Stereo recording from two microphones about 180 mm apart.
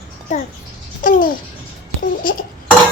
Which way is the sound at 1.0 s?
50° left (ahead or behind).